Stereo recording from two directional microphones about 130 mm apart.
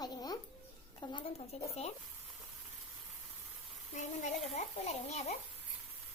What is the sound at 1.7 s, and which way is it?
Speech, 55° left (ahead or behind).